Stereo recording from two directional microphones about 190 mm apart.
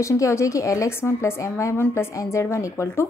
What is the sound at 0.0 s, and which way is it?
A woman's voice, 15° left (ahead or behind).